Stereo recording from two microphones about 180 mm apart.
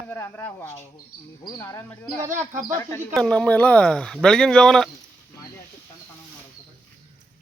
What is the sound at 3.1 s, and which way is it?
Speech, 5° left (ahead or behind).